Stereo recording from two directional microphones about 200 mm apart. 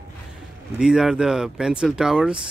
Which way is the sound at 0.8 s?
5° right (ahead or behind).